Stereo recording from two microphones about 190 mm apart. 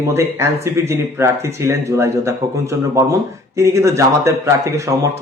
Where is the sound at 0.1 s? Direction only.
15° right (ahead or behind).